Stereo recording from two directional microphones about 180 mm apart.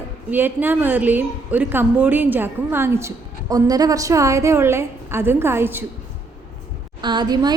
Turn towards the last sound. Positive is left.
turn(degrees=-25)  # may be behind; listen again after turning